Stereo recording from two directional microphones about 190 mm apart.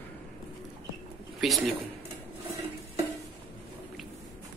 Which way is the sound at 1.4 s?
Centre (ahead or behind).